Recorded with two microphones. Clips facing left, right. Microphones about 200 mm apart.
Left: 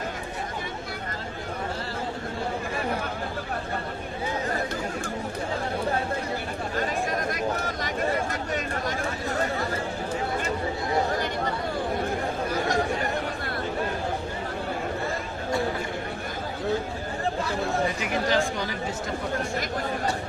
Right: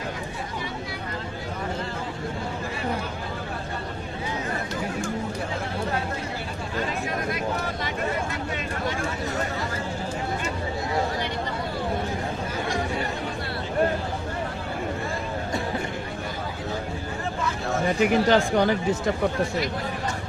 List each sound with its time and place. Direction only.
18.0 s speech: 55° right (ahead or behind)